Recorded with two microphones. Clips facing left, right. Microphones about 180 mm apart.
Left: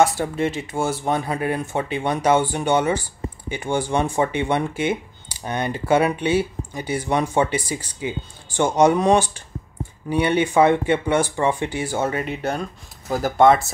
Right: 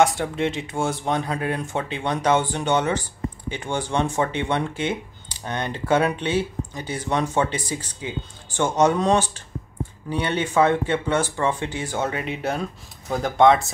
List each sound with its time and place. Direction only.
0.0 s speech: 5° left (ahead or behind)